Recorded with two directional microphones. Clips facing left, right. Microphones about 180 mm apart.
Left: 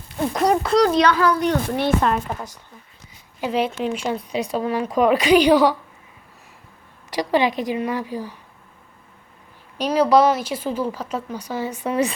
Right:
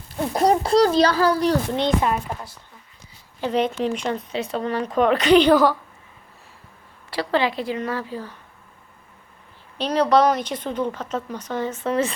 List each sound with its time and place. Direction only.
0.3 s speech: 30° right (ahead or behind)
1.7 s speech: 20° right (ahead or behind)
3.4 s speech: 5° left (ahead or behind)
7.1 s speech: 15° left (ahead or behind)
9.7 s speech: 10° left (ahead or behind)